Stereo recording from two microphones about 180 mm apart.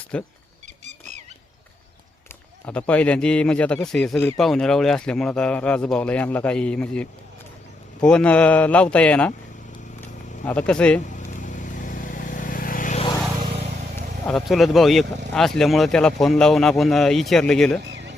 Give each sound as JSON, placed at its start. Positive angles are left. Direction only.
{"t": 0.1, "sound": "speech", "side_deg": 5}
{"t": 2.6, "sound": "speech", "side_deg": 5}
{"t": 10.4, "sound": "speech", "side_deg": 5}
{"t": 11.0, "sound": "vehicle", "side_deg": 45}
{"t": 14.3, "sound": "speech", "side_deg": 0}